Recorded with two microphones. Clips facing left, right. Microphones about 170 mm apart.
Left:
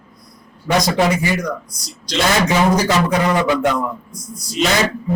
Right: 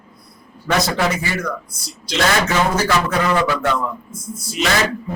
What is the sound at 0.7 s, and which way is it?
Speech, 20° left (ahead or behind).